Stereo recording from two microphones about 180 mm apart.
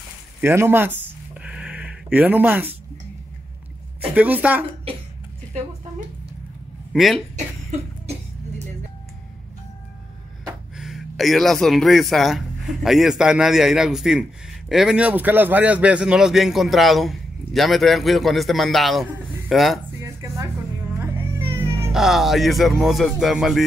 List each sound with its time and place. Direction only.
0.4 s a sound: 10° right (ahead or behind)
4.1 s a woman's voice: 10° right (ahead or behind)
6.9 s speech: centre (ahead or behind)
10.4 s a man's voice: centre (ahead or behind)
20.0 s dishes: 15° right (ahead or behind)
21.0 s cat: 15° right (ahead or behind)
21.9 s a man's voice: centre (ahead or behind)